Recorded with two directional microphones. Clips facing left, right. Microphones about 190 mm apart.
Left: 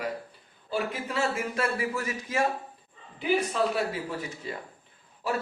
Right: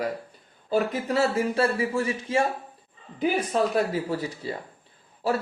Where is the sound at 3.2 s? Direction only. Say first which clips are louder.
Right 2 dB; 45° right (ahead or behind).